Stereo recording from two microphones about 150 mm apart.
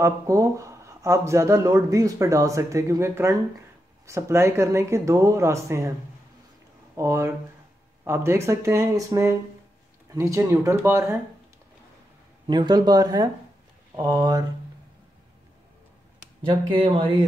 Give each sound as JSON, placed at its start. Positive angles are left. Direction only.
{"t": 0.0, "sound": "speech", "side_deg": -20}
{"t": 7.0, "sound": "speech", "side_deg": -20}
{"t": 12.4, "sound": "speech", "side_deg": -30}
{"t": 16.4, "sound": "speech", "side_deg": -35}